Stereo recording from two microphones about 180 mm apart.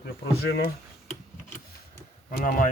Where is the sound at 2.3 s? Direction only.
50° left (ahead or behind).